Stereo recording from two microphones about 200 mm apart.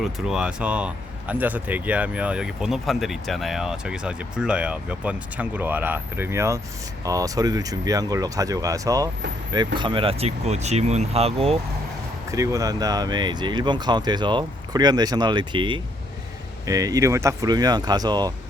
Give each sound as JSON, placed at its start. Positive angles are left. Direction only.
{"t": 0.0, "sound": "speech", "side_deg": 0}
{"t": 12.3, "sound": "speech", "side_deg": -15}